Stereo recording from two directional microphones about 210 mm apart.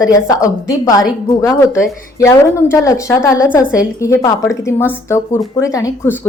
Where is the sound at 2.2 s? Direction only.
15° left (ahead or behind).